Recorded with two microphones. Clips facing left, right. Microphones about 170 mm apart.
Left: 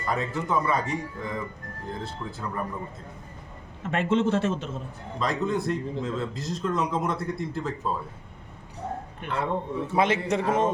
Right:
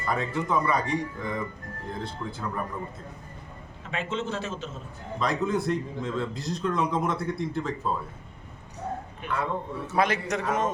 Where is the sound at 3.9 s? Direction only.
55° left (ahead or behind).